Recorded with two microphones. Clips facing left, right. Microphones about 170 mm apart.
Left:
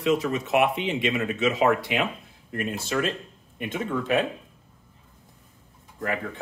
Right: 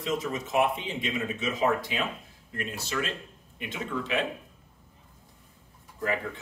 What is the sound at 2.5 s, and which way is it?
Speech, 50° left (ahead or behind).